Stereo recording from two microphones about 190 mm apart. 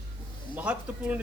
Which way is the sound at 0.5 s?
5° right (ahead or behind).